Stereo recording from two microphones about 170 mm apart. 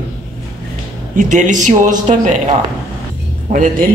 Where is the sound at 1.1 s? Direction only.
50° right (ahead or behind).